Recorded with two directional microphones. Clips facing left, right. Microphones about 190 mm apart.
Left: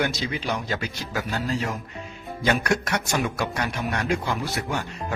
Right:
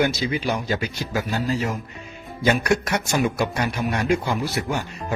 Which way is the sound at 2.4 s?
10° right (ahead or behind).